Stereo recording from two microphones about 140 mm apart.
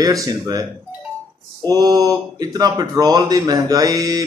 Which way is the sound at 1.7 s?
25° right (ahead or behind).